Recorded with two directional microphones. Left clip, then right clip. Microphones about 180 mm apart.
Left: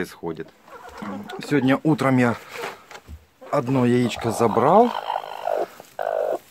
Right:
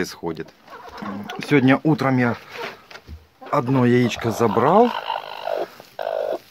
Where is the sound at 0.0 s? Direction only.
Centre (ahead or behind).